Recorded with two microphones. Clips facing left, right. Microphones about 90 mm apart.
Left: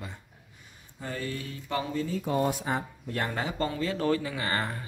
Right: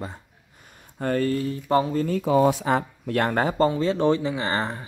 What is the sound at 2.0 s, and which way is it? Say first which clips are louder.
Speech: right 8 dB; 80° right.